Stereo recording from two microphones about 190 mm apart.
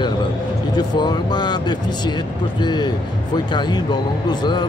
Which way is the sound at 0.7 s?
20° left (ahead or behind).